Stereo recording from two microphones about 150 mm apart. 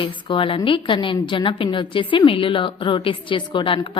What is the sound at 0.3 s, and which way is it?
A woman's voice, 35° left (ahead or behind).